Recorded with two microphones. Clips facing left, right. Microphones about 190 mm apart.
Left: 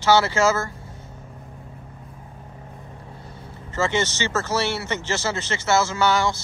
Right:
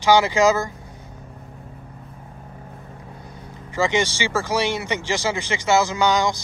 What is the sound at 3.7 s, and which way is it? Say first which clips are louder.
Speech: right 2 dB; 15° right (ahead or behind).